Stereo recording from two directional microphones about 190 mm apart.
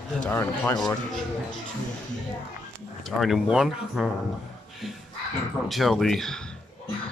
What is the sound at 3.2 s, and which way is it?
Speech, centre (ahead or behind).